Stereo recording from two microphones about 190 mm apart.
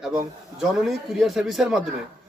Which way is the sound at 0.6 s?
Centre (ahead or behind).